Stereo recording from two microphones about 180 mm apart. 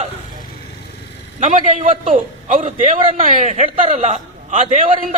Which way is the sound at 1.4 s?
45° right (ahead or behind).